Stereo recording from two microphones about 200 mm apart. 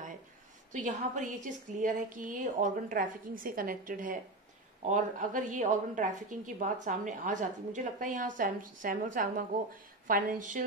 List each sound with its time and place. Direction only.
0.7 s a woman's voice: 40° right (ahead or behind)